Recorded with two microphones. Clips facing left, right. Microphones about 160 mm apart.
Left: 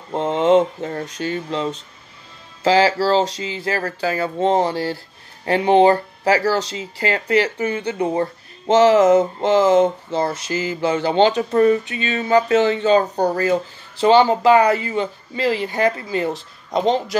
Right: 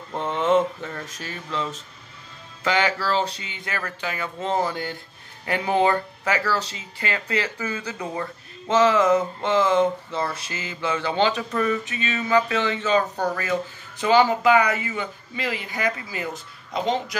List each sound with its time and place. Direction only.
0.1 s speech: 30° left (ahead or behind)